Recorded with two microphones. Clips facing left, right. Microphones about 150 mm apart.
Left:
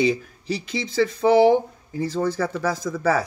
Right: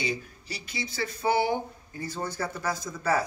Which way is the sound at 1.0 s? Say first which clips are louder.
Left 10 dB; 90° left.